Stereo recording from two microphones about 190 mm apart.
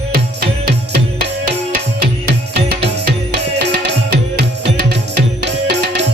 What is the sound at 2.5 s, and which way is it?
Music, 60° right (ahead or behind).